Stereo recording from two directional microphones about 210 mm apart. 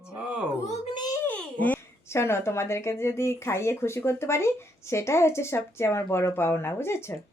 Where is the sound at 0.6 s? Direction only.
35° left (ahead or behind).